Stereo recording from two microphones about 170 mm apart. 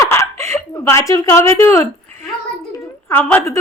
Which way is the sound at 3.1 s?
10° left (ahead or behind).